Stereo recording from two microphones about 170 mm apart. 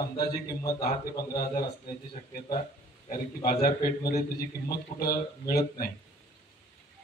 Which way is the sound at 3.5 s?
60° left (ahead or behind).